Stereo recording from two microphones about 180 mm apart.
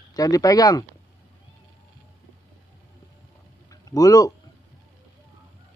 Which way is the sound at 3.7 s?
20° left (ahead or behind).